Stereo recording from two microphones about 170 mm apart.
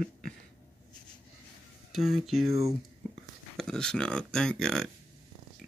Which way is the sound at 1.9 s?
Centre (ahead or behind).